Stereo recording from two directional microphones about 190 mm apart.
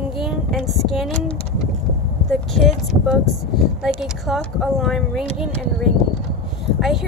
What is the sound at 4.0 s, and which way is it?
A woman's voice, centre (ahead or behind).